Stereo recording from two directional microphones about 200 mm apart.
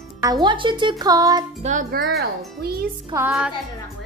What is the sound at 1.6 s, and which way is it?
A child's voice, 40° right (ahead or behind).